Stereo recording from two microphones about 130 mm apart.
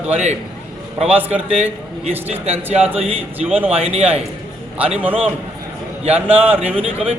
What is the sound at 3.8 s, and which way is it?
Speech, 50° right (ahead or behind).